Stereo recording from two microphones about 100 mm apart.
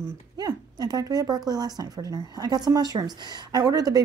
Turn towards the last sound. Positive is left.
turn(degrees=-40)  # may be behind; listen again after turning